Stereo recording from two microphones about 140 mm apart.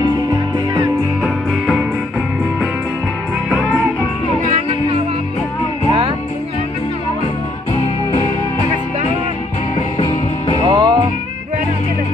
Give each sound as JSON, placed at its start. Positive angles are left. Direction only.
{"t": 1.2, "sound": "music", "side_deg": -5}
{"t": 9.8, "sound": "music", "side_deg": 45}
{"t": 10.6, "sound": "music", "side_deg": -30}